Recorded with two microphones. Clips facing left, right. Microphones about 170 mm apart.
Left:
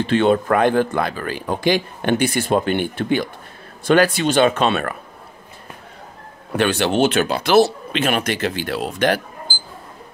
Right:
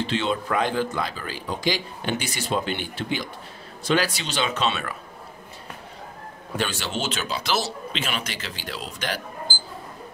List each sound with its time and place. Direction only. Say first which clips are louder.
0.0 s speech: left 9 dB; 55° left (ahead or behind)
6.5 s speech: left 10 dB; 65° left (ahead or behind)